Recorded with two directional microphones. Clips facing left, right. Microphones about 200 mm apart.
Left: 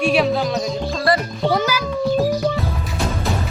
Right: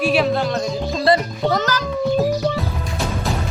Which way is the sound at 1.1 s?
20° right (ahead or behind).